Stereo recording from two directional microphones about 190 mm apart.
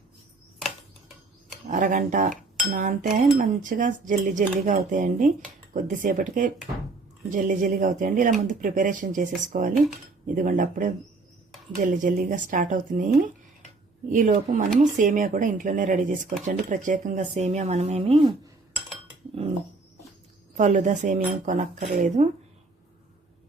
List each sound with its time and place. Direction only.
1.6 s speech: 40° right (ahead or behind)
20.6 s speech: 40° right (ahead or behind)